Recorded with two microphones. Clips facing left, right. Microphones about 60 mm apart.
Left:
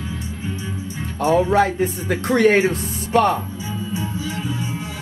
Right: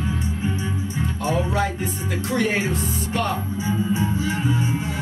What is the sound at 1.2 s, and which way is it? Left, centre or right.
Speech, left.